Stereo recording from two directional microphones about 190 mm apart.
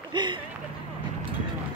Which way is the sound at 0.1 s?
25° right (ahead or behind).